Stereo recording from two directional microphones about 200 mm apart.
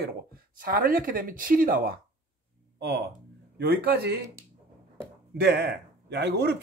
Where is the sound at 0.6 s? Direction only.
45° right (ahead or behind).